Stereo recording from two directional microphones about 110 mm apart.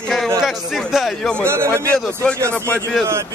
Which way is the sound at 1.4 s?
25° right (ahead or behind).